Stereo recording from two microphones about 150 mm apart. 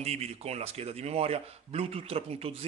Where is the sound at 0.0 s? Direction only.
45° right (ahead or behind).